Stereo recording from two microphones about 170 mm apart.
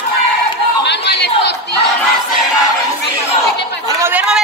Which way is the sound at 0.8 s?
85° left.